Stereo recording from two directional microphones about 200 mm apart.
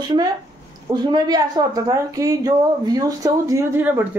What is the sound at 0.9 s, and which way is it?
Speech, 20° right (ahead or behind).